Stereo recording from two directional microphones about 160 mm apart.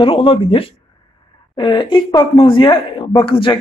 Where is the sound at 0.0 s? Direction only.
35° left (ahead or behind).